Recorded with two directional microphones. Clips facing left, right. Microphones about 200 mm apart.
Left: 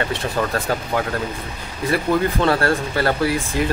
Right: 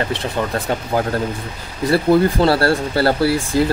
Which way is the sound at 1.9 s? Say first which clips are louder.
Right 5 dB; 35° right (ahead or behind).